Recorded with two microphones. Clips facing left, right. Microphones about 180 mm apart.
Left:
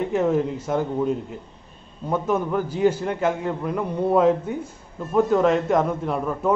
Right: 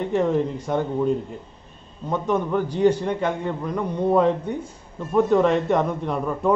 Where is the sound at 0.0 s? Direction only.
5° left (ahead or behind).